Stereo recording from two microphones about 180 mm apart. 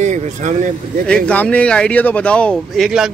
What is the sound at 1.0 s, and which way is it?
Speech, 5° left (ahead or behind).